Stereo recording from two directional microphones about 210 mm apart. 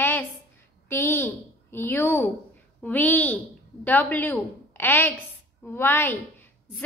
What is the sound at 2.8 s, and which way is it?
A woman's voice, 10° left (ahead or behind).